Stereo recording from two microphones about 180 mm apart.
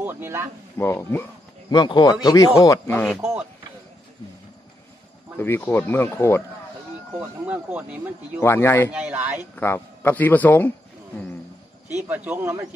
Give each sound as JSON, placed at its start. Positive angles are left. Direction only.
{"t": 0.0, "sound": "speech", "side_deg": -15}
{"t": 0.7, "sound": "speech", "side_deg": 15}
{"t": 1.7, "sound": "speech", "side_deg": 25}
{"t": 2.9, "sound": "speech", "side_deg": 5}
{"t": 3.2, "sound": "speech", "side_deg": -15}
{"t": 5.4, "sound": "speech", "side_deg": 10}
{"t": 7.2, "sound": "speech", "side_deg": -10}
{"t": 8.4, "sound": "speech", "side_deg": 15}
{"t": 8.9, "sound": "speech", "side_deg": -10}
{"t": 9.6, "sound": "speech", "side_deg": 10}
{"t": 12.3, "sound": "speech", "side_deg": -10}